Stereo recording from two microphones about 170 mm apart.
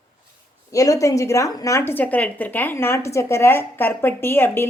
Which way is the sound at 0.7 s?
20° left (ahead or behind).